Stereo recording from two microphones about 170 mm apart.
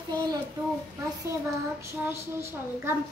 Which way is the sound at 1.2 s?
15° right (ahead or behind).